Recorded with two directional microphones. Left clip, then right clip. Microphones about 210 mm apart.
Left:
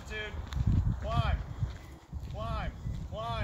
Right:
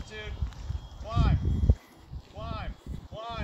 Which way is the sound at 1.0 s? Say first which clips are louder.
Right 1 dB; 50° left (ahead or behind).